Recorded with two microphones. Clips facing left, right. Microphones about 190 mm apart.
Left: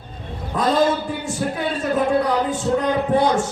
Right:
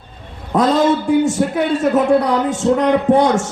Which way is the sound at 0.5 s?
80° right.